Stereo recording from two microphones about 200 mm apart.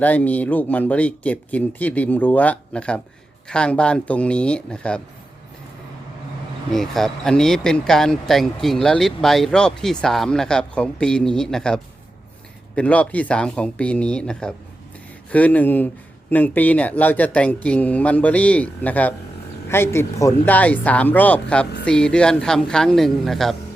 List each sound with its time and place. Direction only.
0.0 s speech: 5° left (ahead or behind)
6.7 s speech: centre (ahead or behind)